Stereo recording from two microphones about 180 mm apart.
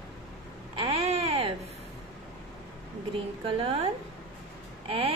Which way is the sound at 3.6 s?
30° right (ahead or behind).